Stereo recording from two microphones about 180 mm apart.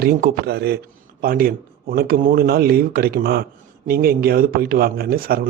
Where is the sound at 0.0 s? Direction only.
55° right (ahead or behind).